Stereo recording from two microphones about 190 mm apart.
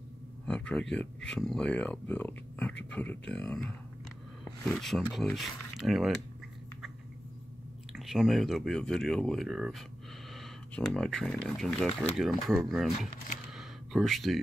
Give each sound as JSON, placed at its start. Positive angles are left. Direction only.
{"t": 0.5, "sound": "speech", "side_deg": 5}
{"t": 7.9, "sound": "speech", "side_deg": 0}